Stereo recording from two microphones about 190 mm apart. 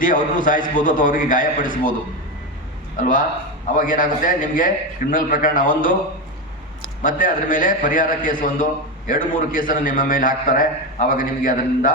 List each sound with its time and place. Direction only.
0.0 s a man's voice: 45° left (ahead or behind)
3.0 s a man's voice: 45° left (ahead or behind)
7.0 s a man's voice: 45° left (ahead or behind)